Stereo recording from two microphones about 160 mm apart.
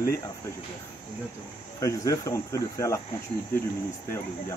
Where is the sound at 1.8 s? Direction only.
20° left (ahead or behind).